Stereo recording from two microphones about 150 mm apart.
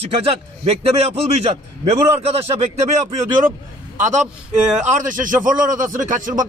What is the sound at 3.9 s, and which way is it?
A man's voice, 55° right (ahead or behind).